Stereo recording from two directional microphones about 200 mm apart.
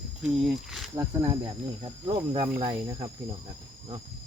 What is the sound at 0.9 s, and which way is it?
Speech, 15° right (ahead or behind).